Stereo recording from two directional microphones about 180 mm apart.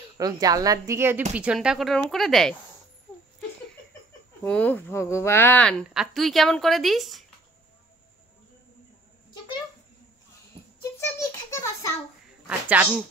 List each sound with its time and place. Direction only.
0.2 s a woman's voice: 20° right (ahead or behind); by 2.5 s centre (ahead or behind)
4.5 s a woman's voice: 10° left (ahead or behind)
10.8 s a sound: 15° left (ahead or behind)
12.4 s speech: 10° right (ahead or behind)